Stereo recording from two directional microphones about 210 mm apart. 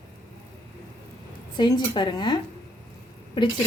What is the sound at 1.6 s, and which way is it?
Speech, 20° left (ahead or behind).